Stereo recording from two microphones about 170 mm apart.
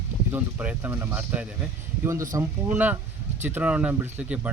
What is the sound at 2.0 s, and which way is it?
Speech, 20° right (ahead or behind).